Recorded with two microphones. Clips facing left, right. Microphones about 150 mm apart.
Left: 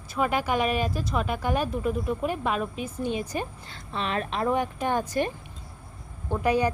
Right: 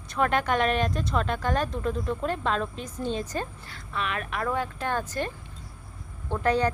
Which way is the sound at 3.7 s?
30° left (ahead or behind).